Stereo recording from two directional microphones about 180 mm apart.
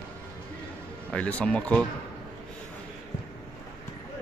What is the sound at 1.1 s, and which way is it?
Speech, 5° left (ahead or behind).